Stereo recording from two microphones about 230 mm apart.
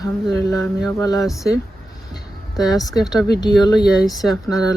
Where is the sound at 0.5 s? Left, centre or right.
Centre.